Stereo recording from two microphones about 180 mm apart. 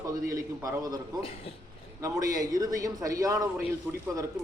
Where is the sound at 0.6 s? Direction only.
20° right (ahead or behind).